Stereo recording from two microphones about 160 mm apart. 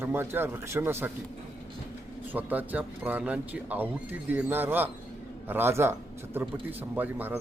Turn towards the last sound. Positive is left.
turn(degrees=-10)  # may be behind; listen again after turning